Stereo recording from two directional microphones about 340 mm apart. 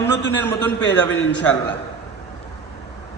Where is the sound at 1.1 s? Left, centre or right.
Left.